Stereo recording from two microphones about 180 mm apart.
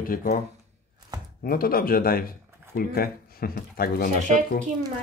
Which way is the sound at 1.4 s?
55° left (ahead or behind).